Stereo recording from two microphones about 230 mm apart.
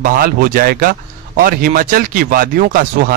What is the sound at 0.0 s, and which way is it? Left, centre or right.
A man's voice, right.